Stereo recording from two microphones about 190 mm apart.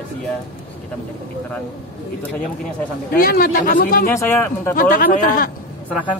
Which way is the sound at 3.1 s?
45° left (ahead or behind).